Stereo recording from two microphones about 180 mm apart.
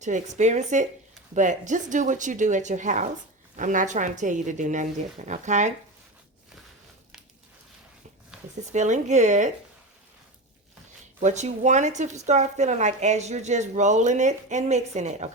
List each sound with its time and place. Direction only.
0.0 s a woman's voice: 40° right (ahead or behind)
8.3 s a sound: 5° right (ahead or behind)
8.7 s a woman's voice: 40° right (ahead or behind)
11.2 s a woman's voice: 40° right (ahead or behind)